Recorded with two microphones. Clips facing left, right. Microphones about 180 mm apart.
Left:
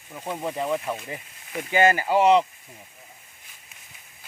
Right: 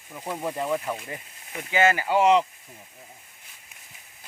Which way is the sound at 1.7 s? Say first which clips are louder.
Left 2 dB; 40° left (ahead or behind).